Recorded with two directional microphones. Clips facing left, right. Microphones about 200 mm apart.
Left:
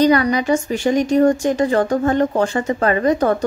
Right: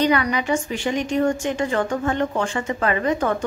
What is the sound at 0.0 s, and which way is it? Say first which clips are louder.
Speech: left 5 dB; 40° left (ahead or behind).